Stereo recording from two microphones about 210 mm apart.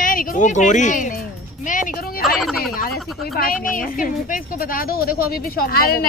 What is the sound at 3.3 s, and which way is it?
A woman's voice, 45° left (ahead or behind).